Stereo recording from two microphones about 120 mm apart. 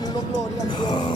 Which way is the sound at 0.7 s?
45° left (ahead or behind).